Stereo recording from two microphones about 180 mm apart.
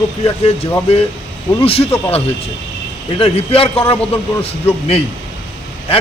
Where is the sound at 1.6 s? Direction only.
35° left (ahead or behind).